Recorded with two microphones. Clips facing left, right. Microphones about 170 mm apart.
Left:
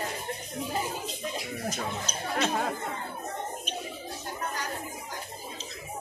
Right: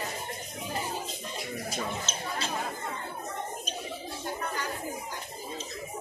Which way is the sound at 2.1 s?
25° right (ahead or behind).